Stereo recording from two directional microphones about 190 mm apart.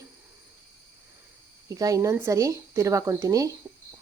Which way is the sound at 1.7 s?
20° right (ahead or behind).